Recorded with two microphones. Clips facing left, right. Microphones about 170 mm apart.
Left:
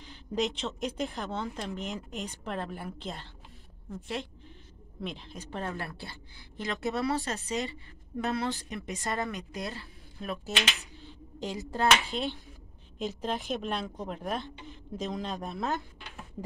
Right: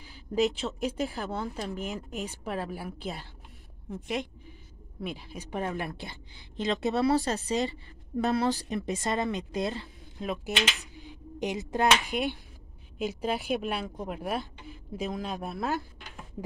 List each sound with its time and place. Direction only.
0.0 s a woman's voice: 5° right (ahead or behind); by 7.1 s 20° right (ahead or behind)
7.1 s speech: 35° right (ahead or behind)
9.0 s a woman's voice: 20° right (ahead or behind)
11.0 s a sound: 15° right (ahead or behind)
11.7 s a woman's voice: 15° right (ahead or behind)